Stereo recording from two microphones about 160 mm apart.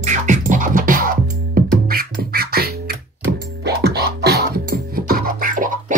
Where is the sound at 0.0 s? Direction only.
50° right (ahead or behind); by 3.0 s 80° right.